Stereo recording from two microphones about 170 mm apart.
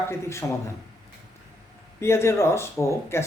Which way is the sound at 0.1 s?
15° left (ahead or behind).